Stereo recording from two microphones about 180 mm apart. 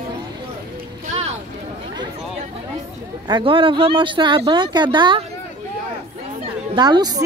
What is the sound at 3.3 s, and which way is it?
Speech, 30° right (ahead or behind).